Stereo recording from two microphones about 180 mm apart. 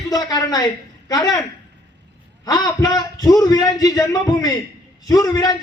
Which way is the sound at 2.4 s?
20° left (ahead or behind).